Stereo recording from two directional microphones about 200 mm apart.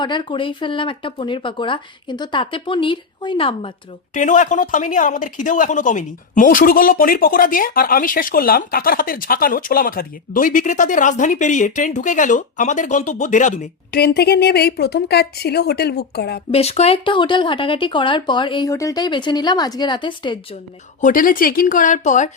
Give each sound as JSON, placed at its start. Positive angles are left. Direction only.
{"t": 0.0, "sound": "speech", "side_deg": 25}
{"t": 4.1, "sound": "speech", "side_deg": 40}
{"t": 14.0, "sound": "speech", "side_deg": 55}
{"t": 16.5, "sound": "speech", "side_deg": 30}
{"t": 21.0, "sound": "speech", "side_deg": 45}